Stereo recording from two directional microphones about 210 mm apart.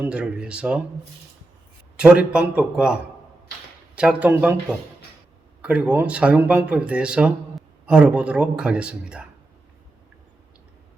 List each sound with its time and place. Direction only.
0.0 s speech: 5° right (ahead or behind)
2.0 s speech: 5° right (ahead or behind)
5.6 s speech: 5° right (ahead or behind)